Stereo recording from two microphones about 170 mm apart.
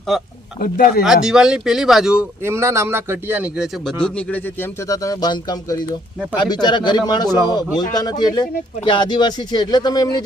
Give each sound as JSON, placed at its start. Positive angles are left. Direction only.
{"t": 0.6, "sound": "speech", "side_deg": 55}
{"t": 1.0, "sound": "speech", "side_deg": -5}
{"t": 2.4, "sound": "a man's voice", "side_deg": -15}